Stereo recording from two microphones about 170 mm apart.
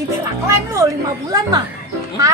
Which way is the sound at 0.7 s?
20° right (ahead or behind).